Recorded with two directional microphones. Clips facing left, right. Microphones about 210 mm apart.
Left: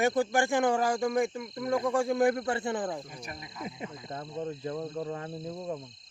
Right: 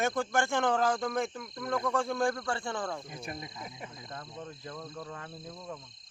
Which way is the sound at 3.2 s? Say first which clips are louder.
Right 2 dB; 25° right (ahead or behind).